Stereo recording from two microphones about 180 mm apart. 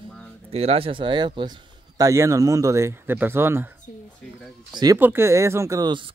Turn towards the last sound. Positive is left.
turn(degrees=-20)  # may be behind; listen again after turning